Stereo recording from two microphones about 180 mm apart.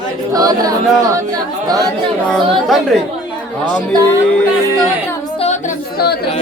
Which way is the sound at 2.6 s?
Centre (ahead or behind).